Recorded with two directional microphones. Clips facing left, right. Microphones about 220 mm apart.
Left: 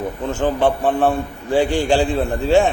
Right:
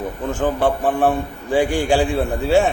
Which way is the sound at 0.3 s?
10° right (ahead or behind).